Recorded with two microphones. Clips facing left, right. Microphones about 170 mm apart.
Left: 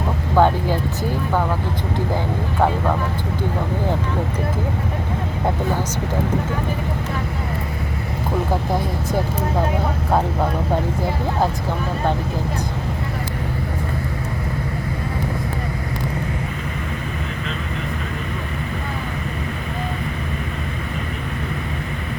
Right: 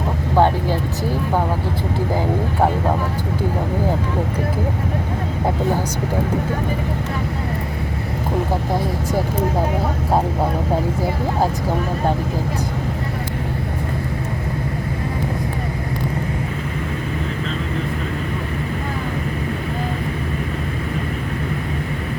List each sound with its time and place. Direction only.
0.4 s speech: 30° right (ahead or behind)